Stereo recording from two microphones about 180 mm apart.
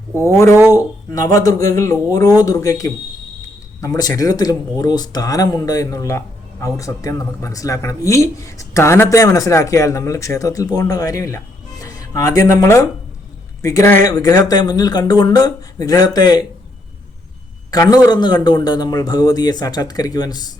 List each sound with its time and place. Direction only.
0.2 s a man's voice: 15° left (ahead or behind)
17.7 s a man's voice: 20° left (ahead or behind)